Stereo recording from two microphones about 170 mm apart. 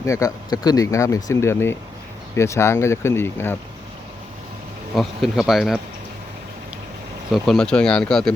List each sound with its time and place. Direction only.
0.0 s speech: 20° left (ahead or behind)
4.9 s speech: centre (ahead or behind)
7.3 s speech: centre (ahead or behind)